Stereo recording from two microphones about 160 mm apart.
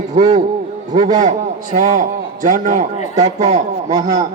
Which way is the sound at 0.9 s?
50° right (ahead or behind).